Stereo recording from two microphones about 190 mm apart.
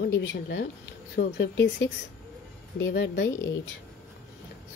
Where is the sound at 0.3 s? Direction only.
65° left (ahead or behind).